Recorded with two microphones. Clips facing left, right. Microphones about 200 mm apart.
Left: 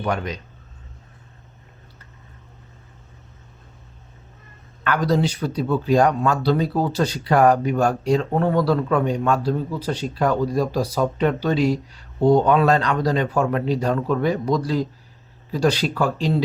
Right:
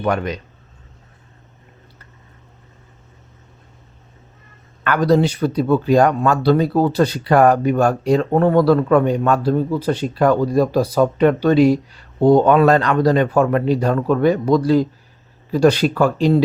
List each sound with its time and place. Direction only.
0.0 s speech: 60° right (ahead or behind)
4.8 s speech: 60° right (ahead or behind)